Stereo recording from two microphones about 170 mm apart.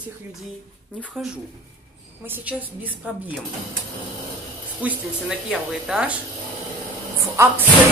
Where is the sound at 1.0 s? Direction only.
Centre (ahead or behind).